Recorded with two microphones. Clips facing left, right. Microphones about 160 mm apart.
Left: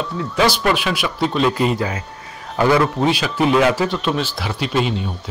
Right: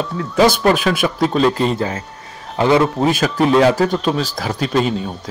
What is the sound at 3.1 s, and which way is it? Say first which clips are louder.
A man's voice: right 2 dB; 45° right (ahead or behind).